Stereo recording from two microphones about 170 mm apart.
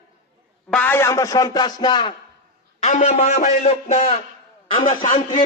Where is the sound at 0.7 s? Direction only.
10° left (ahead or behind).